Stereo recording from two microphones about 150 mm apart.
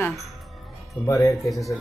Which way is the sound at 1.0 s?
20° left (ahead or behind).